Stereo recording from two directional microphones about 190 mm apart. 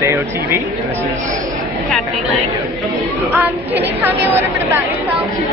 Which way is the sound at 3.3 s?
10° right (ahead or behind).